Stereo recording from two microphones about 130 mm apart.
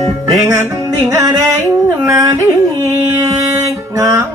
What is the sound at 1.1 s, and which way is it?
Music, 25° right (ahead or behind).